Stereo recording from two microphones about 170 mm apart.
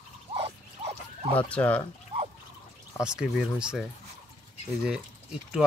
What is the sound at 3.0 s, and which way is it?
Speech, 5° right (ahead or behind).